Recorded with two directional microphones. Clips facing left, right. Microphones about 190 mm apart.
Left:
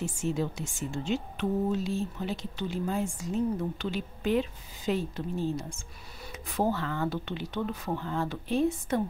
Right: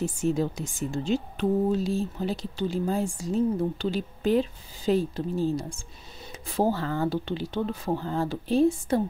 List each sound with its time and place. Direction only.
0.0 s speech: 40° right (ahead or behind)